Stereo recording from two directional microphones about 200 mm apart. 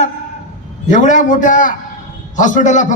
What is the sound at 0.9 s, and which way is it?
A man's voice, 40° left (ahead or behind).